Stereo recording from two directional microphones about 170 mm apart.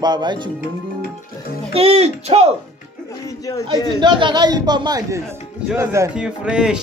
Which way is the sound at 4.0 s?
25° right (ahead or behind).